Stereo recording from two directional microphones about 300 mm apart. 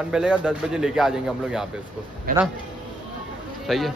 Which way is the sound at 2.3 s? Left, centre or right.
Right.